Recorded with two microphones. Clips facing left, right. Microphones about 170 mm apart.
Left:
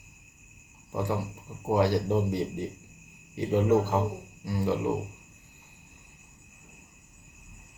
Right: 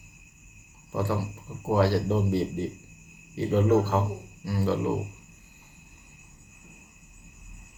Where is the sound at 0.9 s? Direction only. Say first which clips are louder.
Right 1 dB; 20° left (ahead or behind).